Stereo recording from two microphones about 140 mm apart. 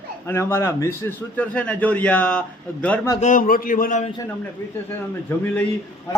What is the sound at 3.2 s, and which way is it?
Speech, 80° left.